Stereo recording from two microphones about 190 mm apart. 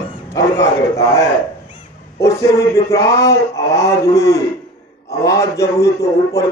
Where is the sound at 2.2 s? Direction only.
15° left (ahead or behind).